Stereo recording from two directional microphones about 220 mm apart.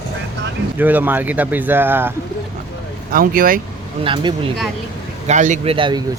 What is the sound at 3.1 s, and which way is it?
Speech, 40° right (ahead or behind).